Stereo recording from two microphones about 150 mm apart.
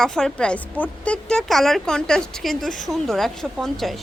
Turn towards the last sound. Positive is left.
turn(degrees=0)  # may be behind; listen again after turning